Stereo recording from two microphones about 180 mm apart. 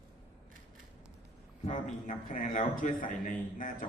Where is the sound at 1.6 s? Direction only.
45° left (ahead or behind).